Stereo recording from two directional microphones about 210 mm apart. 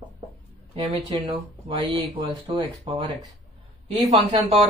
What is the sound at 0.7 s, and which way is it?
Speech, 25° right (ahead or behind).